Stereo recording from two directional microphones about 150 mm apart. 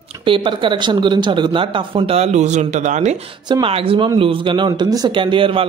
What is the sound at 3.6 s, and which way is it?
A man's voice, 35° right (ahead or behind).